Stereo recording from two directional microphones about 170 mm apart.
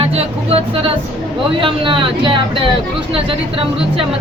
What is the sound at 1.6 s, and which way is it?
Speech, 30° right (ahead or behind).